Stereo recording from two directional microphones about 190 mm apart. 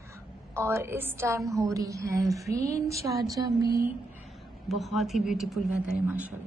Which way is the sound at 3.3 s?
20° right (ahead or behind).